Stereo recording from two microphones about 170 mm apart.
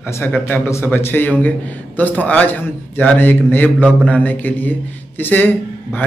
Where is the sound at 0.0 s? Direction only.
10° left (ahead or behind).